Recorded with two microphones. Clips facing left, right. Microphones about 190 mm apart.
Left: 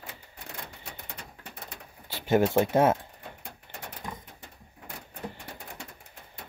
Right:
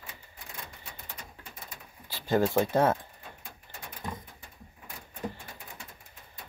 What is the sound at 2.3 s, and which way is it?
Speech, 20° left (ahead or behind).